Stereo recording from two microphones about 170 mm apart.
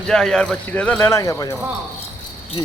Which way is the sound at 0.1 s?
5° left (ahead or behind).